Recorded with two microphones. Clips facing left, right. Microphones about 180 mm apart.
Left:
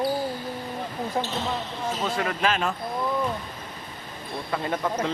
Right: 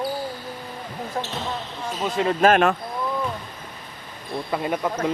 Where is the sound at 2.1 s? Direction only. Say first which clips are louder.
Right 5 dB; 25° right (ahead or behind).